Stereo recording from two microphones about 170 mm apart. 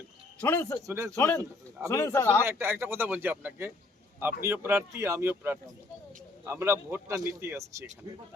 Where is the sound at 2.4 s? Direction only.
15° right (ahead or behind).